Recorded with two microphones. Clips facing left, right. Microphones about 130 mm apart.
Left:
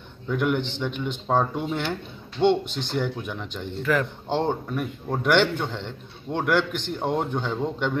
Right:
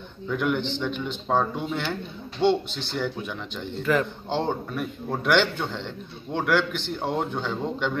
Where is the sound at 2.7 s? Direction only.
50° left (ahead or behind).